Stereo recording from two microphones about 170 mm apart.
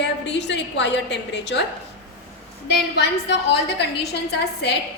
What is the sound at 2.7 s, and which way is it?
A woman's voice, 90° left.